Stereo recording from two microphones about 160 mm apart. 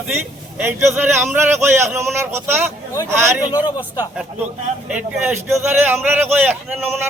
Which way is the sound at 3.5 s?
30° left (ahead or behind).